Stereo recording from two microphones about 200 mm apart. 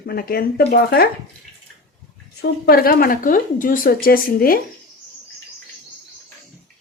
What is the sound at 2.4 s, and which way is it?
A woman's voice, 50° left (ahead or behind).